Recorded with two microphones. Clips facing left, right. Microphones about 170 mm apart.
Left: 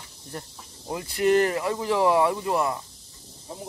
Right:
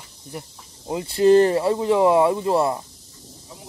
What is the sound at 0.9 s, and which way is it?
Speech, 25° right (ahead or behind).